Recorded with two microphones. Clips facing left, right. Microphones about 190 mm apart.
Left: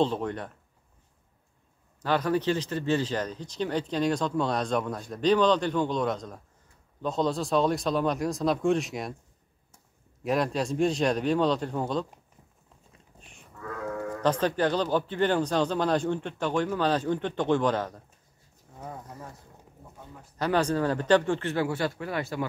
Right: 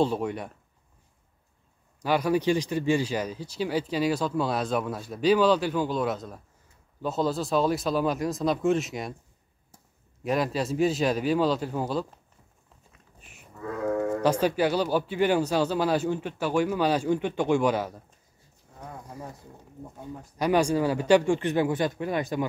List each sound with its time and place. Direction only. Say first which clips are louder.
0.0 s speech: right 1 dB; 10° right (ahead or behind)
2.0 s speech: right 2 dB; 10° right (ahead or behind)
10.2 s speech: even; centre (ahead or behind)
14.2 s speech: even; 10° right (ahead or behind)
19.0 s speech: right 3 dB; 10° right (ahead or behind)
20.3 s speech: right 2 dB; 10° right (ahead or behind)